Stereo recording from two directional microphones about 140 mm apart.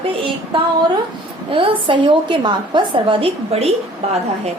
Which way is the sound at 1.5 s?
40° right (ahead or behind).